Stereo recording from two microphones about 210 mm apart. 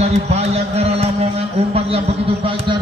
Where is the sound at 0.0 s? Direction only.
30° right (ahead or behind).